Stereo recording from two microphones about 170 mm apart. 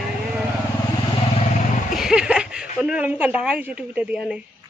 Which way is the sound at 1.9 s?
5° right (ahead or behind).